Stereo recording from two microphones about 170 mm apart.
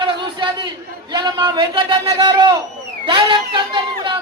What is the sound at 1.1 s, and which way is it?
A man's voice, 25° right (ahead or behind).